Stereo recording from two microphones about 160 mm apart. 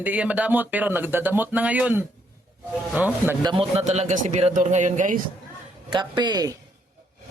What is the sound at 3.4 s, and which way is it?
A man's voice, 30° right (ahead or behind).